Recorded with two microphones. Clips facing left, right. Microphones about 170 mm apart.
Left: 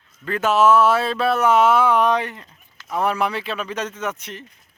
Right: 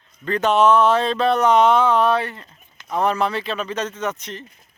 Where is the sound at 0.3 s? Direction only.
5° left (ahead or behind).